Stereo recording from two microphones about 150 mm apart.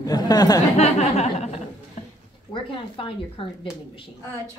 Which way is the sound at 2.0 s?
45° left (ahead or behind).